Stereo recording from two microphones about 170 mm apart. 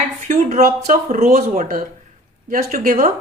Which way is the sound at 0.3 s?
45° right (ahead or behind).